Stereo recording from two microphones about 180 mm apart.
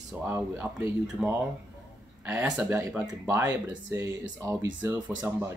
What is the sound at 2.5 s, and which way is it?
Speech, 15° right (ahead or behind).